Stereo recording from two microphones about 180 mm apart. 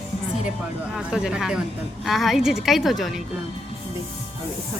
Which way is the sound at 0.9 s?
5° right (ahead or behind).